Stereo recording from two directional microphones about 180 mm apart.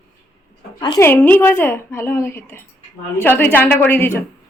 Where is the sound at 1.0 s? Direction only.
10° left (ahead or behind).